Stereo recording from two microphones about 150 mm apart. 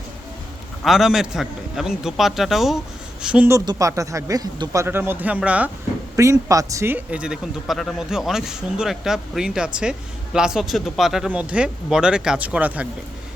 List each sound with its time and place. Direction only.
0.9 s speech: 5° right (ahead or behind)
3.5 s speech: 20° right (ahead or behind)
6.1 s speech: 20° right (ahead or behind)